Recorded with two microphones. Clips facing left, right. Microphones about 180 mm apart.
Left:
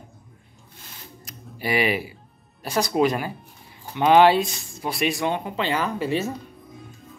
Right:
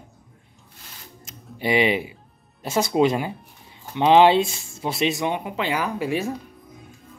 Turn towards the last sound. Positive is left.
turn(degrees=-10)  # may be behind; listen again after turning